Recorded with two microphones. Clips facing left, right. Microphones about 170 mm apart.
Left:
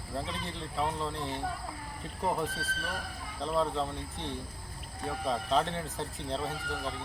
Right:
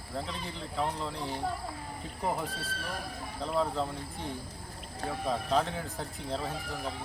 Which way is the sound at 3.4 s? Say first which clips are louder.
Even; 5° right (ahead or behind).